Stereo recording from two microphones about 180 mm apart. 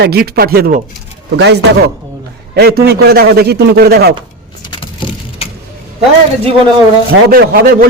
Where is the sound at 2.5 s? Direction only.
60° right (ahead or behind).